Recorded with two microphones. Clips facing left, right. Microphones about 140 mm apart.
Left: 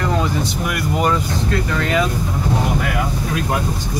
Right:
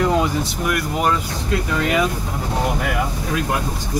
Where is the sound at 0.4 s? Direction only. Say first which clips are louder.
Even; centre (ahead or behind).